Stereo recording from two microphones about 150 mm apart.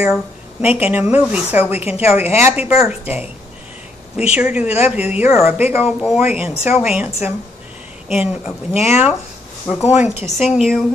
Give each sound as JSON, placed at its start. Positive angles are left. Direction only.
{"t": 0.0, "sound": "a woman's voice", "side_deg": -5}
{"t": 4.3, "sound": "a woman's voice", "side_deg": -10}